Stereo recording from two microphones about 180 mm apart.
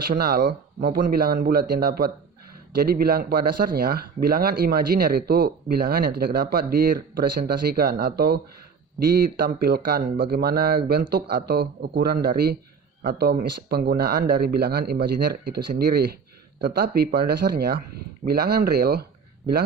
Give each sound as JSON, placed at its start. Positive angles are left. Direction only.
{"t": 0.1, "sound": "speech", "side_deg": -55}